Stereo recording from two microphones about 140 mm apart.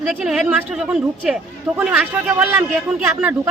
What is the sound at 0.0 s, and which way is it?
A man's voice, centre (ahead or behind).